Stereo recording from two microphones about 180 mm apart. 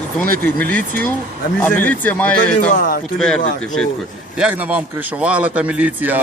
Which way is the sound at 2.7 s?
50° left (ahead or behind).